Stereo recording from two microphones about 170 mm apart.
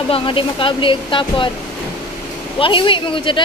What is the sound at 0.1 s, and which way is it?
Speech, 30° left (ahead or behind).